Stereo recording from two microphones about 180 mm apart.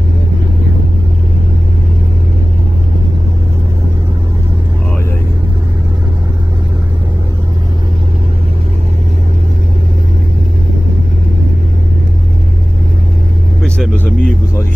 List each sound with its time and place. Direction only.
13.6 s vehicle: 10° left (ahead or behind)